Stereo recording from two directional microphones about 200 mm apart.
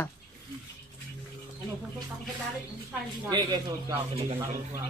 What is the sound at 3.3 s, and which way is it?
Speech, 20° right (ahead or behind).